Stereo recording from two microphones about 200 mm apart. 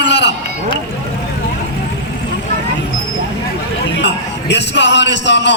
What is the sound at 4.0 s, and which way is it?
Music, 60° left (ahead or behind).